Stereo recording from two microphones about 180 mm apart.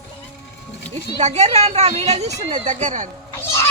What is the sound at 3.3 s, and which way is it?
Fowl, 15° left (ahead or behind).